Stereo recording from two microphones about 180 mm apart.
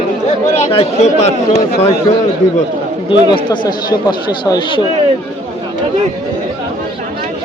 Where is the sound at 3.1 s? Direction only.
25° left (ahead or behind).